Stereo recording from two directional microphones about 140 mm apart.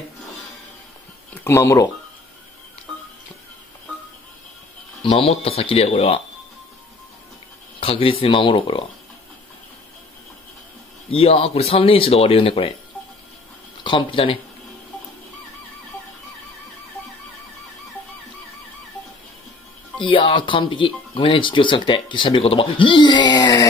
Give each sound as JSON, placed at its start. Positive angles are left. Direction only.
{"t": 1.4, "sound": "speech", "side_deg": 20}
{"t": 5.0, "sound": "speech", "side_deg": 45}
{"t": 7.8, "sound": "speech", "side_deg": 40}
{"t": 11.1, "sound": "speech", "side_deg": 40}
{"t": 13.8, "sound": "speech", "side_deg": 40}
{"t": 20.0, "sound": "speech", "side_deg": 40}